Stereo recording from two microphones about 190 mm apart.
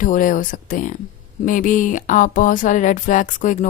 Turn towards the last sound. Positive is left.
turn(degrees=40)  # may be behind; listen again after turning